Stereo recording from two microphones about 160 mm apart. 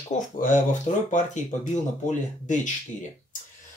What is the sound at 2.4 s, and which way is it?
Speech, 50° left (ahead or behind).